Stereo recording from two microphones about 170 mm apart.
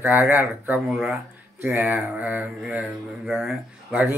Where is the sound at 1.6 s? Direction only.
15° right (ahead or behind).